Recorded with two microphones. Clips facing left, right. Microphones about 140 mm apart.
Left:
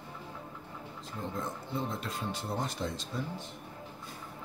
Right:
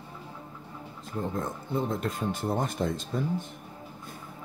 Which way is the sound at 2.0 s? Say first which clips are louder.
Right 7 dB; 50° right (ahead or behind).